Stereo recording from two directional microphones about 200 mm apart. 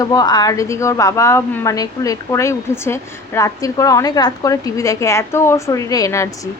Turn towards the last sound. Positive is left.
turn(degrees=15)  # may be behind; listen again after turning